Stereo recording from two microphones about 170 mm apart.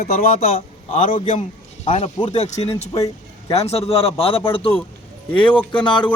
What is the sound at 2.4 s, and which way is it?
A man's voice, 40° left (ahead or behind).